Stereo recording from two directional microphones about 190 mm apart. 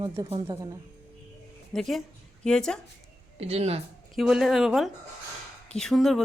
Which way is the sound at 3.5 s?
30° right (ahead or behind).